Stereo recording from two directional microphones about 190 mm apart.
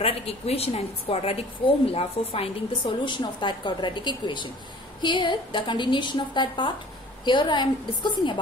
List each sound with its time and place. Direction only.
0.0 s a woman's voice: 30° left (ahead or behind)